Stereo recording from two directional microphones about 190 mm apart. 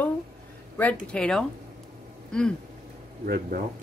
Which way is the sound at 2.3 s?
5° left (ahead or behind).